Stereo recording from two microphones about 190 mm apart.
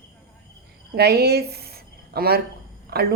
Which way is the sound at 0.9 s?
60° right (ahead or behind).